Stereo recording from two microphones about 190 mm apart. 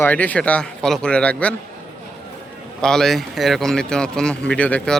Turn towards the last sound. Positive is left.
turn(degrees=5)  # may be behind; listen again after turning